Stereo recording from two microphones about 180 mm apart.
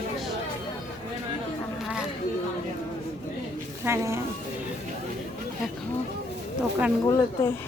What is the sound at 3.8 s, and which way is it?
Speech, 15° right (ahead or behind).